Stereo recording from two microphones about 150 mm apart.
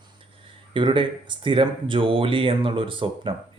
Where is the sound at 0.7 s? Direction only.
35° right (ahead or behind).